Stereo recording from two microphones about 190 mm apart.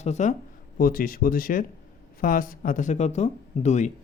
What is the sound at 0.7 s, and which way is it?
Speech, 50° left (ahead or behind).